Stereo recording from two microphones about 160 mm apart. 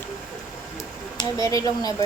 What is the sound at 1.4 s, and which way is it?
Speech, 20° left (ahead or behind).